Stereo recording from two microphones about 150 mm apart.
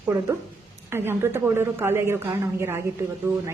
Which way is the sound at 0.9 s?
15° right (ahead or behind).